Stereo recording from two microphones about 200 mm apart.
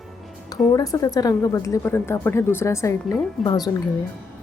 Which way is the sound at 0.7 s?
15° left (ahead or behind).